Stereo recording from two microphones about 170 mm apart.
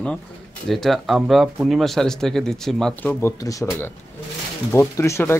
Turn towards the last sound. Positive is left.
turn(degrees=15)  # may be behind; listen again after turning